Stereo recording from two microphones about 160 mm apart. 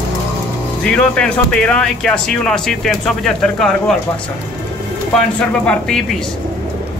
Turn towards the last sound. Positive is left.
turn(degrees=5)  # may be behind; listen again after turning